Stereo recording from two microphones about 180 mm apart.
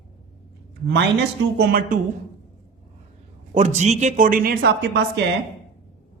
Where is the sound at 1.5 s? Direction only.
55° right (ahead or behind).